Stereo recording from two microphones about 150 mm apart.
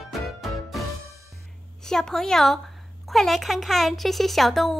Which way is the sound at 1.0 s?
20° right (ahead or behind).